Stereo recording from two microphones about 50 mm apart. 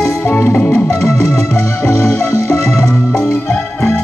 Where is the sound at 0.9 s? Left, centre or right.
Left.